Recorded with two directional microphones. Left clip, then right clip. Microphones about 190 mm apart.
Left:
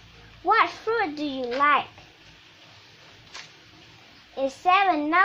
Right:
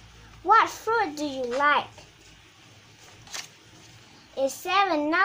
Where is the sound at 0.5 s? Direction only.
20° left (ahead or behind).